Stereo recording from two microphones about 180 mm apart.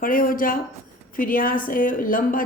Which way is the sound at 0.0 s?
50° left (ahead or behind).